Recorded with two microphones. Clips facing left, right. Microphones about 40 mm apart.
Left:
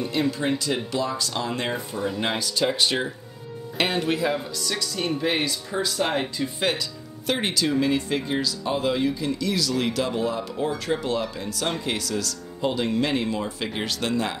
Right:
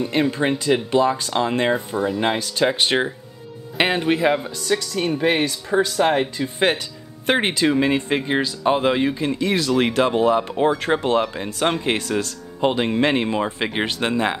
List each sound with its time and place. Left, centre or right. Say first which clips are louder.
0.1 s speech: right 4 dB; right
2.0 s speech: right 5 dB; centre
2.3 s speech: right 4 dB; right
3.7 s speech: right 5 dB; right